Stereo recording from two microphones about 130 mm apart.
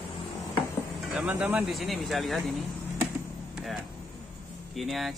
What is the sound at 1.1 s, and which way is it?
Speech, 15° right (ahead or behind).